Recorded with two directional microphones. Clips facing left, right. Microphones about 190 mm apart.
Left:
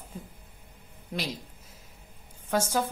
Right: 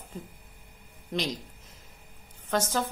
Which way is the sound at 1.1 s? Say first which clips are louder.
Right 3 dB; 5° left (ahead or behind).